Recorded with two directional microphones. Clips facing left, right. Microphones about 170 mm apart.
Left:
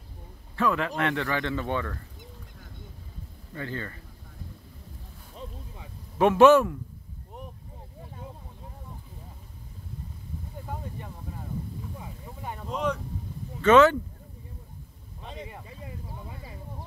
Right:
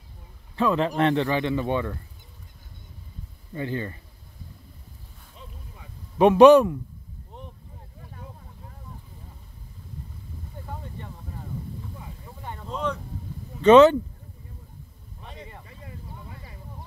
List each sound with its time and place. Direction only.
0.6 s speech: 25° right (ahead or behind)
3.5 s speech: 20° right (ahead or behind)
6.1 s speech: 20° right (ahead or behind)
12.0 s boat: 10° left (ahead or behind)
13.6 s speech: 20° right (ahead or behind)
15.2 s a sound: 20° left (ahead or behind)